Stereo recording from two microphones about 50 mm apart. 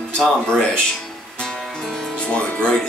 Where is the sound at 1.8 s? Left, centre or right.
Centre.